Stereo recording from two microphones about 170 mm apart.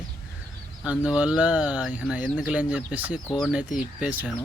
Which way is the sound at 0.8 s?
5° right (ahead or behind).